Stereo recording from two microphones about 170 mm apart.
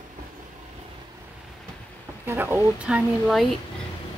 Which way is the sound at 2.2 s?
15° right (ahead or behind).